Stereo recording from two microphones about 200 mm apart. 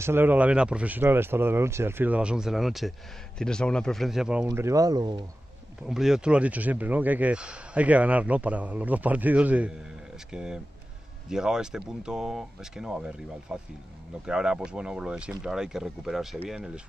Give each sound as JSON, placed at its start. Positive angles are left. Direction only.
{"t": 0.0, "sound": "speech", "side_deg": -10}
{"t": 4.5, "sound": "speech", "side_deg": -15}
{"t": 5.9, "sound": "speech", "side_deg": 0}